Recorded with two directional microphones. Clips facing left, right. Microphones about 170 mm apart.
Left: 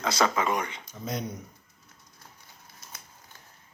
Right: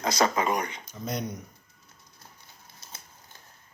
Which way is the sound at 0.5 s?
40° right (ahead or behind).